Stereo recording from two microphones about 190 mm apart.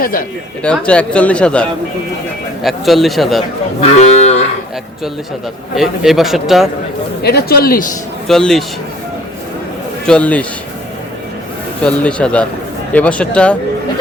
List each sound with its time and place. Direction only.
0.6 s speech: 5° left (ahead or behind)
2.6 s speech: centre (ahead or behind)
3.8 s cattle: 35° left (ahead or behind)
5.7 s speech: centre (ahead or behind)
7.2 s speech: 60° left (ahead or behind)
8.3 s speech: centre (ahead or behind)
10.1 s speech: 5° left (ahead or behind)
11.8 s speech: 5° left (ahead or behind)